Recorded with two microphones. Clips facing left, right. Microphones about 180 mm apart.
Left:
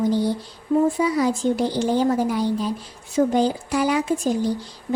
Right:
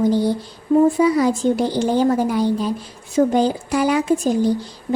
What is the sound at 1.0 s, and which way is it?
Speech, 55° right (ahead or behind).